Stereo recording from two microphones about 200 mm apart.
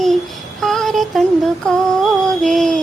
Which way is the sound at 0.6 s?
Centre (ahead or behind).